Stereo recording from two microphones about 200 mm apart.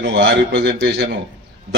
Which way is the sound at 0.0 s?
50° right (ahead or behind).